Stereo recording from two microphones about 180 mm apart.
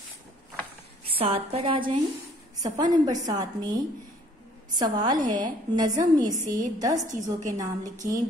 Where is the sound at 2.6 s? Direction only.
20° right (ahead or behind).